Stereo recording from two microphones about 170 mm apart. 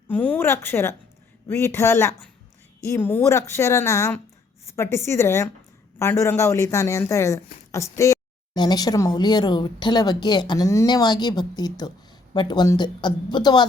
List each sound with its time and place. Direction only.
0.1 s a woman's voice: 10° left (ahead or behind); by 13.7 s 25° left (ahead or behind)